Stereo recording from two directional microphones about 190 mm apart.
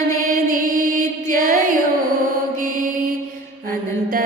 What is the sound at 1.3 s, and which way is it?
Music, 45° right (ahead or behind).